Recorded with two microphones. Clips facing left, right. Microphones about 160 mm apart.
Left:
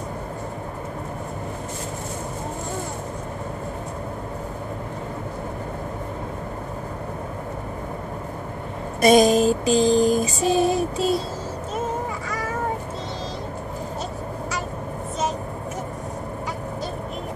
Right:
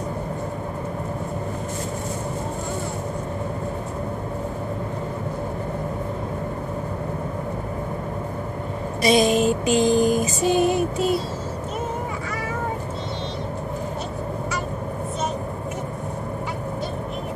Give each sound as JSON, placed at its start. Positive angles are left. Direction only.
{"t": 9.0, "sound": "mantra", "side_deg": 45}